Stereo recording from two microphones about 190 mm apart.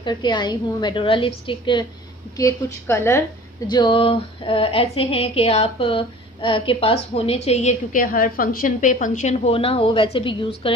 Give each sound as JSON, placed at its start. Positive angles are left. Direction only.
{"t": 0.0, "sound": "a woman's voice", "side_deg": 25}
{"t": 2.3, "sound": "a woman's voice", "side_deg": 15}
{"t": 3.7, "sound": "a woman's voice", "side_deg": 25}